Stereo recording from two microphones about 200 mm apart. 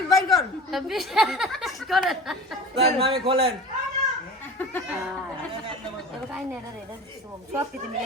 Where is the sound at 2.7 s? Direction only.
30° right (ahead or behind).